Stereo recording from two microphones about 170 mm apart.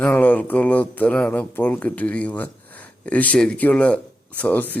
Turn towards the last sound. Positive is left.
turn(degrees=10)  # may be behind; listen again after turning